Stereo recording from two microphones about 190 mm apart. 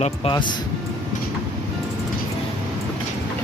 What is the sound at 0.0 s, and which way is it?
Speech, 30° left (ahead or behind).